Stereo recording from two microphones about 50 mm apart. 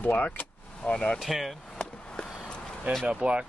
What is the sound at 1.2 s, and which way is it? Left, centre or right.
Speech, centre.